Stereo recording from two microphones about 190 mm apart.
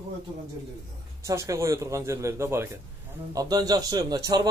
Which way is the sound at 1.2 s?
15° right (ahead or behind).